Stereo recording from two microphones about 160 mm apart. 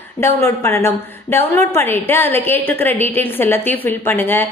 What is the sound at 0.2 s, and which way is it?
A woman's voice, 15° left (ahead or behind).